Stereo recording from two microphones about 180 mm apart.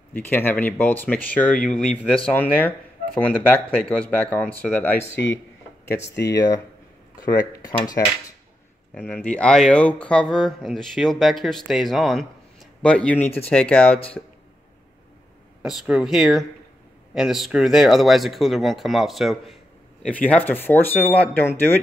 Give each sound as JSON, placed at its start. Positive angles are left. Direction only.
{"t": 0.1, "sound": "speech", "side_deg": 10}
{"t": 6.3, "sound": "speech", "side_deg": 20}
{"t": 8.9, "sound": "speech", "side_deg": 10}
{"t": 15.6, "sound": "speech", "side_deg": 0}